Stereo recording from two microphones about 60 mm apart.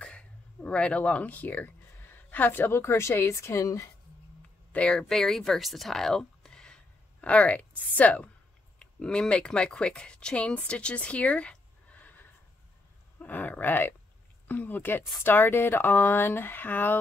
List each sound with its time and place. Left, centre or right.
0.0 s speech: centre; by 3.9 s left
4.7 s speech: centre; by 17.0 s left